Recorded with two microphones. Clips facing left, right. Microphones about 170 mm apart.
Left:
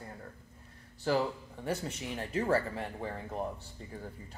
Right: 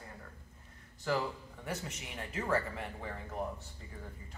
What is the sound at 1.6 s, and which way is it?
Speech, 30° left (ahead or behind).